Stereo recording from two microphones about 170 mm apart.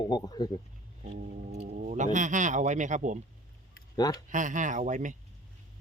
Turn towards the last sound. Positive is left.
turn(degrees=-50)  # may be behind; listen again after turning